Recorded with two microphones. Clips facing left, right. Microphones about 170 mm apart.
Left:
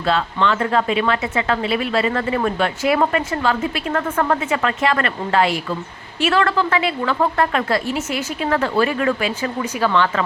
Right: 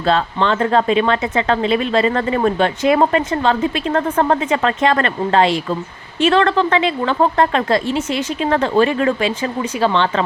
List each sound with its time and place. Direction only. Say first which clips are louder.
0.0 s speech: right 2 dB; 30° right (ahead or behind)